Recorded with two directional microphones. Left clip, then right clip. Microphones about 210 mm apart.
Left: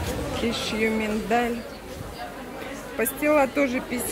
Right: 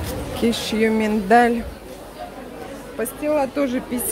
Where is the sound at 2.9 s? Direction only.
Centre (ahead or behind).